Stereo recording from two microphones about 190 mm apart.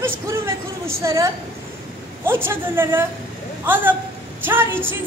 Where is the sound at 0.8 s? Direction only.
15° right (ahead or behind).